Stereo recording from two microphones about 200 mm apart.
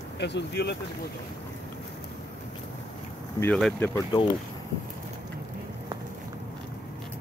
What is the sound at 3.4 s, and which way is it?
Speech, 5° left (ahead or behind).